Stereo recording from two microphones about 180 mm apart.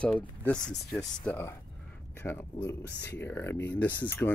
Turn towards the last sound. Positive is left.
turn(degrees=10)  # may be behind; listen again after turning